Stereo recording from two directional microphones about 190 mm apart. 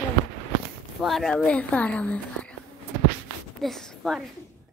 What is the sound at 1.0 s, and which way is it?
A woman's voice, centre (ahead or behind).